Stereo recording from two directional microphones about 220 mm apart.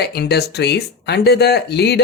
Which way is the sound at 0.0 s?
50° left (ahead or behind).